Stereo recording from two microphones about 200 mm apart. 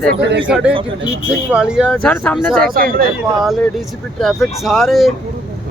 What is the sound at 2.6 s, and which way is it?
Speech, 45° right (ahead or behind).